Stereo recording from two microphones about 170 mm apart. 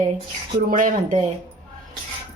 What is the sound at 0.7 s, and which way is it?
Speech, 45° right (ahead or behind).